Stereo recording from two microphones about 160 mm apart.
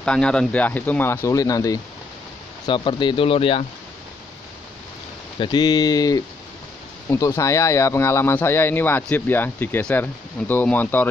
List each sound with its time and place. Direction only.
0.0 s speech: 5° left (ahead or behind); by 3.6 s 35° left (ahead or behind)
5.4 s speech: 25° left (ahead or behind); by 11.1 s 10° left (ahead or behind)